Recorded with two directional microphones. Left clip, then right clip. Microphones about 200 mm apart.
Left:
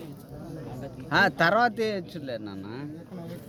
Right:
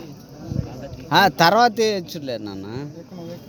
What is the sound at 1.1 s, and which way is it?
A man's voice, 30° right (ahead or behind).